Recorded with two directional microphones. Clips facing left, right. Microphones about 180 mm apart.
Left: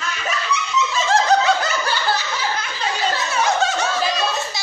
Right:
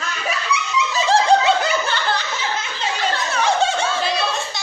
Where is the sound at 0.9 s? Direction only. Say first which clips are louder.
Right 2 dB; 30° right (ahead or behind).